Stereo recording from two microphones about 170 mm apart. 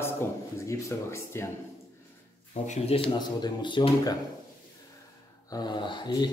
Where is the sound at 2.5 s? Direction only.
40° left (ahead or behind).